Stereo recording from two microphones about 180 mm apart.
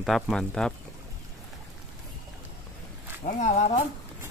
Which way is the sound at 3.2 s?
40° left (ahead or behind).